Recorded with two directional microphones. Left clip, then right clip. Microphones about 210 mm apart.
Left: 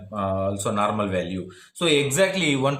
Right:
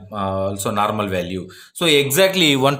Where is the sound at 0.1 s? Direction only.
45° right (ahead or behind).